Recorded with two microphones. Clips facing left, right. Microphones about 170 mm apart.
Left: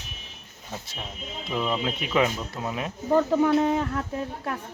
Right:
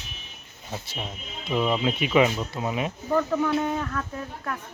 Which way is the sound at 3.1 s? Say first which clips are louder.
Left 4 dB; 20° left (ahead or behind).